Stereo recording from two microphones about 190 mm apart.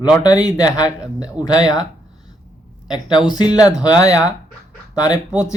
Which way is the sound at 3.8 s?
20° left (ahead or behind).